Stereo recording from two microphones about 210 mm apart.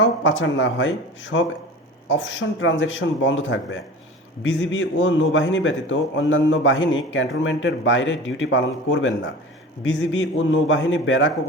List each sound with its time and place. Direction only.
0.0 s a man's voice: 65° left (ahead or behind)